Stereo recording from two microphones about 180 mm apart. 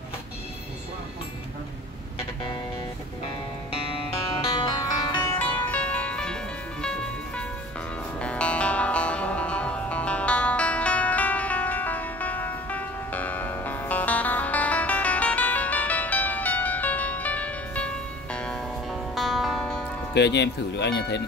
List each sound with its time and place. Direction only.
4.6 s music: 25° left (ahead or behind); by 19.9 s 5° left (ahead or behind)
20.2 s speech: 70° left (ahead or behind)